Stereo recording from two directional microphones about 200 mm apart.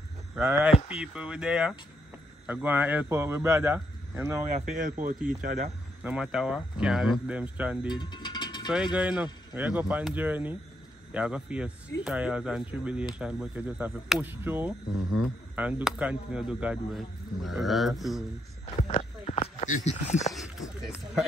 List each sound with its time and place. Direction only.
0.4 s a man's voice: 10° right (ahead or behind)
4.5 s speech: 35° right (ahead or behind)
6.0 s speech: 5° right (ahead or behind)
7.9 s mechanisms: 20° left (ahead or behind)
8.9 s a man's voice: 5° right (ahead or behind)
18.8 s a sound: 35° left (ahead or behind)
20.3 s a sound: centre (ahead or behind)